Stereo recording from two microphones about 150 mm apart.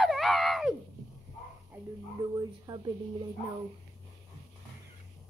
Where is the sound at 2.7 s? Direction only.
30° right (ahead or behind).